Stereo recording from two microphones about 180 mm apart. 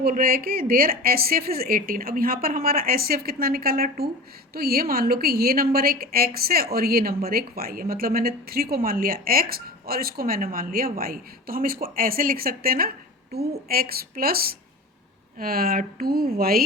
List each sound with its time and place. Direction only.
0.0 s a woman's voice: 55° right (ahead or behind)